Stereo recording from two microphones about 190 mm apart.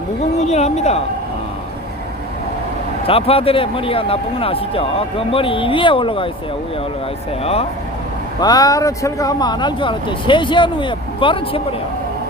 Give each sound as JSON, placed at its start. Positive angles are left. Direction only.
{"t": 0.3, "sound": "speech", "side_deg": 35}
{"t": 3.1, "sound": "speech", "side_deg": 30}
{"t": 7.4, "sound": "speech", "side_deg": 30}
{"t": 8.4, "sound": "speech", "side_deg": 20}